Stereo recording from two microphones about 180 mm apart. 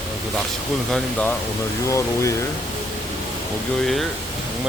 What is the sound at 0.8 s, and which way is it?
Speech, 5° left (ahead or behind).